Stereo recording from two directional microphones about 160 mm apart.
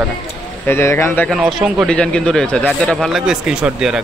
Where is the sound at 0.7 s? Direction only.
15° left (ahead or behind).